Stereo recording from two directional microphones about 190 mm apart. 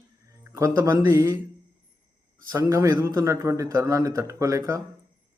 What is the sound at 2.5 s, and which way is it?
A man's voice, 15° right (ahead or behind).